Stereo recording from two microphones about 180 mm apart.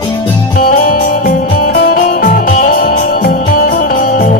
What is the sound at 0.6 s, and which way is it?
Music, 50° left (ahead or behind).